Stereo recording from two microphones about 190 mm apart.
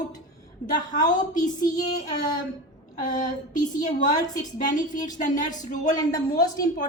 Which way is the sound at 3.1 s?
45° left (ahead or behind).